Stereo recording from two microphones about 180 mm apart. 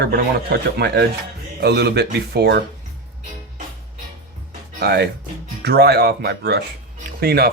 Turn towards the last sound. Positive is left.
turn(degrees=-60)  # may be behind; listen again after turning